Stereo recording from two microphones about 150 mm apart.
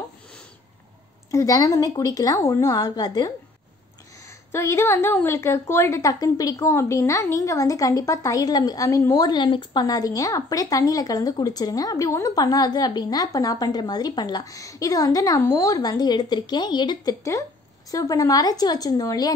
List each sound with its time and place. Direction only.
1.3 s a woman's voice: 20° left (ahead or behind)
4.5 s a woman's voice: 15° left (ahead or behind)